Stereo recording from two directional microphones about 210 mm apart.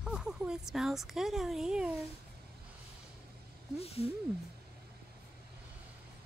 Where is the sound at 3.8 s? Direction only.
30° left (ahead or behind).